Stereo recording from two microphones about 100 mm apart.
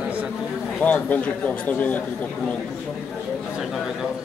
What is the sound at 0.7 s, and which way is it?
A man's voice, 15° left (ahead or behind).